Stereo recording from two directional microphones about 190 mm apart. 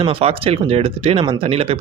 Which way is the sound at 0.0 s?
30° right (ahead or behind).